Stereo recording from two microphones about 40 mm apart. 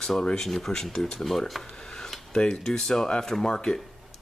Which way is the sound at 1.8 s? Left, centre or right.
Centre.